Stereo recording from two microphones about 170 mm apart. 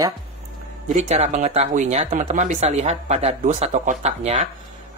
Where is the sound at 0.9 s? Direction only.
40° right (ahead or behind).